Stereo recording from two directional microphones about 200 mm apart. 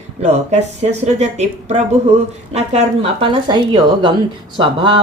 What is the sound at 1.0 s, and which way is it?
Speech, 35° right (ahead or behind).